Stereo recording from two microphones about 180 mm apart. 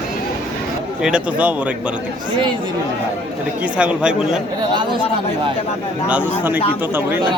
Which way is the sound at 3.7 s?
5° right (ahead or behind).